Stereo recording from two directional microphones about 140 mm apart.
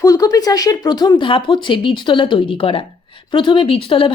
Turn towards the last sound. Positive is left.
turn(degrees=40)  # may be behind; listen again after turning